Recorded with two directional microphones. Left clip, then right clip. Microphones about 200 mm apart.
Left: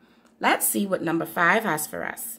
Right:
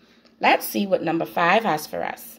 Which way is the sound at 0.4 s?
15° left (ahead or behind).